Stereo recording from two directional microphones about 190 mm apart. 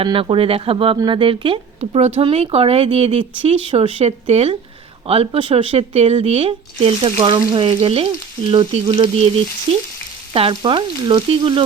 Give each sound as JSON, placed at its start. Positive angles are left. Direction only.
{"t": 0.0, "sound": "speech", "side_deg": -25}
{"t": 10.3, "sound": "speech", "side_deg": -30}